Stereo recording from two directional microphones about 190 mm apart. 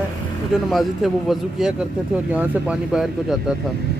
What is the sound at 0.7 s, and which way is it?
Speech, centre (ahead or behind).